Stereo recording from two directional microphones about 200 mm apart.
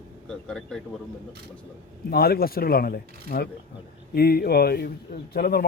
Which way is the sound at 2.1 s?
50° left (ahead or behind).